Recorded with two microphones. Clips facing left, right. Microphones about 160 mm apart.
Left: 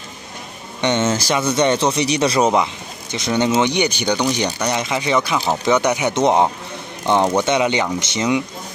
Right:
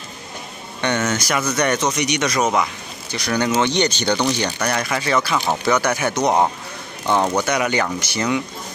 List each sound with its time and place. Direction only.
0.7 s a man's voice: 20° left (ahead or behind)
3.7 s a man's voice: 10° left (ahead or behind)